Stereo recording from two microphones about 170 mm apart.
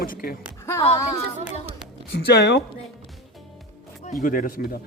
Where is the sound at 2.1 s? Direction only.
75° left (ahead or behind).